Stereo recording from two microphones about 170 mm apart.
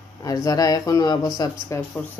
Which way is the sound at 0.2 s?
20° left (ahead or behind).